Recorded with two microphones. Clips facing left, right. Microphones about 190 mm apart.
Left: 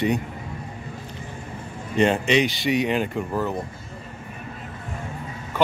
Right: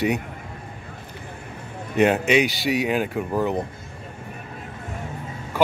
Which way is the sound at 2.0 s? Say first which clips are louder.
Right 1 dB; 5° right (ahead or behind).